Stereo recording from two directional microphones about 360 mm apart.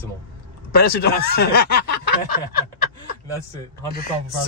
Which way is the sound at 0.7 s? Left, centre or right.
Left.